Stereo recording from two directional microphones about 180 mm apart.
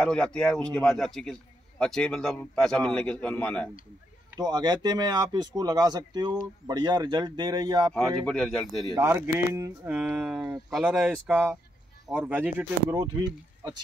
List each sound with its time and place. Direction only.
0.0 s a man's voice: 5° left (ahead or behind)
4.3 s speech: 20° right (ahead or behind)
7.9 s a man's voice: 5° left (ahead or behind)
8.8 s speech: 25° right (ahead or behind)
9.1 s speech: 15° right (ahead or behind)
11.1 s speech: 10° right (ahead or behind)